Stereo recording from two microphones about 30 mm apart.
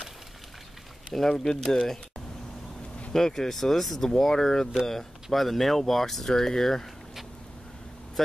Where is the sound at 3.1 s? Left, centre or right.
Centre.